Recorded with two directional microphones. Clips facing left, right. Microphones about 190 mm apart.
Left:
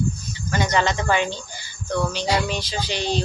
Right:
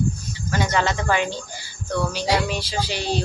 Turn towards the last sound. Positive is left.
turn(degrees=-10)  # may be behind; listen again after turning